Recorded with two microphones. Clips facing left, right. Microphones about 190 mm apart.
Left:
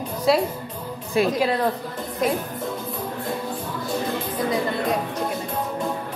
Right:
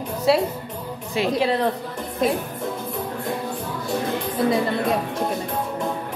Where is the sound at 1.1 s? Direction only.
20° right (ahead or behind).